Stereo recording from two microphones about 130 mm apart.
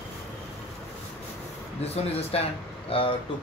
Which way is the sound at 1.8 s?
50° left (ahead or behind).